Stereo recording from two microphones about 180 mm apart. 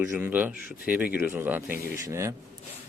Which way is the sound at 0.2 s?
10° right (ahead or behind).